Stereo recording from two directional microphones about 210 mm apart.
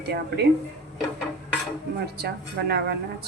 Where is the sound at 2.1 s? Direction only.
50° right (ahead or behind).